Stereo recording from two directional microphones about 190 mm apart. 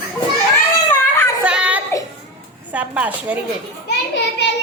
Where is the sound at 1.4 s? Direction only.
5° right (ahead or behind).